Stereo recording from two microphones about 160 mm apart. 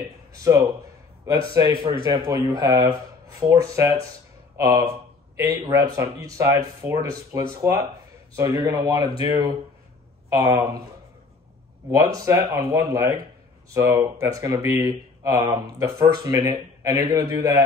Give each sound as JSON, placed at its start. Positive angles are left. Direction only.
{"t": 0.4, "sound": "speech", "side_deg": -20}
{"t": 11.9, "sound": "speech", "side_deg": -20}